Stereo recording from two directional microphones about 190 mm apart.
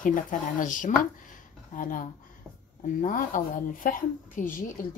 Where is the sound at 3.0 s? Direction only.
45° left (ahead or behind).